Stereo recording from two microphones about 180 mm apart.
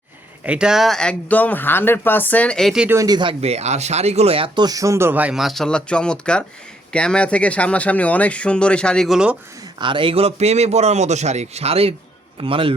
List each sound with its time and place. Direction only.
0.4 s speech: 5° right (ahead or behind)
2.9 s speech: 20° right (ahead or behind); by 9.4 s 5° right (ahead or behind)
9.7 s a man's voice: 25° right (ahead or behind)